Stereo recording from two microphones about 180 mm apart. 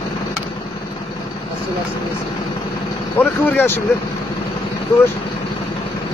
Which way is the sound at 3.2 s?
10° left (ahead or behind).